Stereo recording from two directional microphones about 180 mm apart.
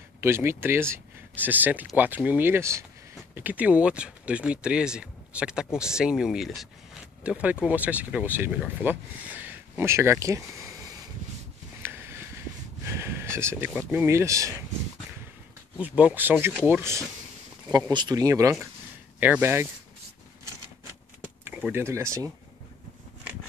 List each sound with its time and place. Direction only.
0.2 s speech: 15° right (ahead or behind)
11.8 s a sound: 10° right (ahead or behind)
12.8 s speech: 15° right (ahead or behind)
15.8 s speech: 10° right (ahead or behind)
21.5 s speech: 10° right (ahead or behind)